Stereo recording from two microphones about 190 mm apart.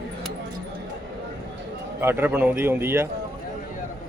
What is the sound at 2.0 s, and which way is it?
Speech, 10° right (ahead or behind).